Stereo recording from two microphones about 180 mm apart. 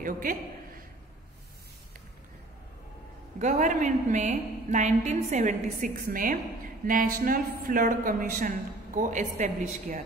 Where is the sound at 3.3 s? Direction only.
40° right (ahead or behind).